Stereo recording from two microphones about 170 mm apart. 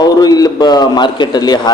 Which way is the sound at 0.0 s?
25° left (ahead or behind).